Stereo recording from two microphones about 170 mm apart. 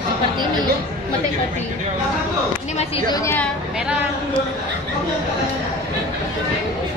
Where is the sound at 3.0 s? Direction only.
20° left (ahead or behind).